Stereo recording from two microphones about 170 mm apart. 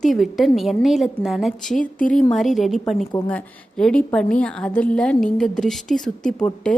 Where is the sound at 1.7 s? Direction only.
50° left (ahead or behind).